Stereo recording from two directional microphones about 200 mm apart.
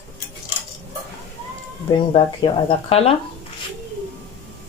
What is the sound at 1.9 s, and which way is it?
Speech, 25° left (ahead or behind).